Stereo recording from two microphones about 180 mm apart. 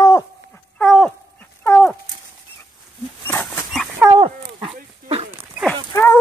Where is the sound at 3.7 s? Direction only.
Centre (ahead or behind).